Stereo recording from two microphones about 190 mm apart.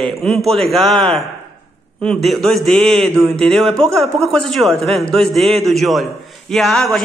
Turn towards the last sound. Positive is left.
turn(degrees=0)  # may be behind; listen again after turning